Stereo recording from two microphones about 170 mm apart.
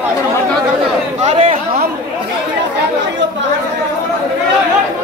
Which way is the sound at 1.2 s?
45° right (ahead or behind).